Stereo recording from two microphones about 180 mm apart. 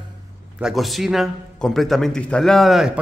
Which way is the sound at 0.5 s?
Centre (ahead or behind).